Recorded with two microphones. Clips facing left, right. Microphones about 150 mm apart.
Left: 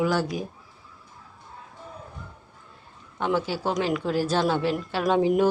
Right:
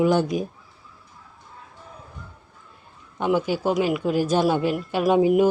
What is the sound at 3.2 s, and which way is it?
A woman's voice, 15° right (ahead or behind).